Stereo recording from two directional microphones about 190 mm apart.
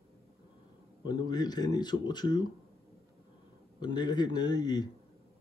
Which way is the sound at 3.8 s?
20° left (ahead or behind).